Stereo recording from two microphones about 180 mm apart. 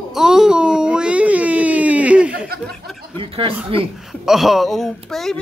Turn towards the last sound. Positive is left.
turn(degrees=0)  # may be behind; listen again after turning